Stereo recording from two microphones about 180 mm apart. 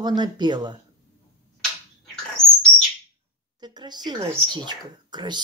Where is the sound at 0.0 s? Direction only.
25° right (ahead or behind).